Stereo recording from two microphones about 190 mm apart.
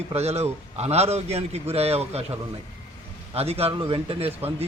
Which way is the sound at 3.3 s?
30° right (ahead or behind).